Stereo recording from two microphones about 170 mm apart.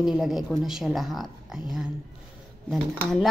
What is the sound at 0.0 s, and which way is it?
Speech, centre (ahead or behind).